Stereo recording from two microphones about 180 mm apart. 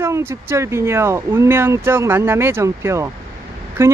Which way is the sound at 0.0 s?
15° right (ahead or behind).